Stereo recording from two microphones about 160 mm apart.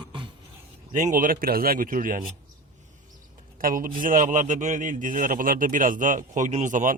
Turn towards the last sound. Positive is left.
turn(degrees=-55)  # may be behind; listen again after turning